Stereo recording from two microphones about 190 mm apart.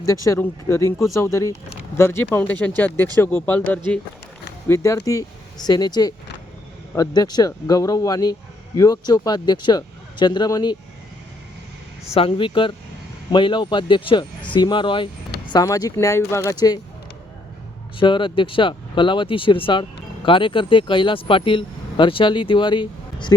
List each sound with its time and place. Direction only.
0.0 s speech: 15° left (ahead or behind)
4.7 s speech: 15° left (ahead or behind)
12.0 s speech: 30° left (ahead or behind)
18.0 s speech: 25° left (ahead or behind)